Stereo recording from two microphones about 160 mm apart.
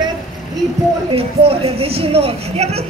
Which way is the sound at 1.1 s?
35° right (ahead or behind).